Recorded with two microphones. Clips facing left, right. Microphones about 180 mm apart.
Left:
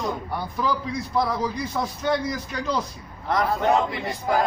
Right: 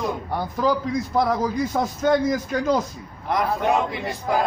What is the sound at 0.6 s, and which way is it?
A man's voice, 40° right (ahead or behind).